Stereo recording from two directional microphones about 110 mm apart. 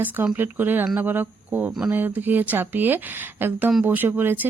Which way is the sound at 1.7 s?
5° right (ahead or behind).